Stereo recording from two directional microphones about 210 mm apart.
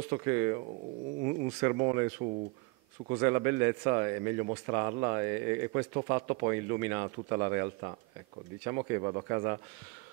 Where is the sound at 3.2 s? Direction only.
15° right (ahead or behind).